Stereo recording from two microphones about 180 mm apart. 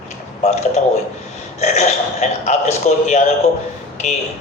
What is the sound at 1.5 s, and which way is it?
Speech, 40° left (ahead or behind).